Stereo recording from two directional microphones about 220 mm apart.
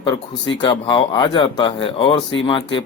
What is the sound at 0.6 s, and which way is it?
A man's voice, 20° left (ahead or behind).